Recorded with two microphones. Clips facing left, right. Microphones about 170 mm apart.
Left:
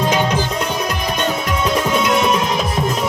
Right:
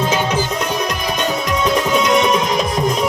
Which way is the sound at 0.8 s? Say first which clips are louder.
Even; 10° left (ahead or behind).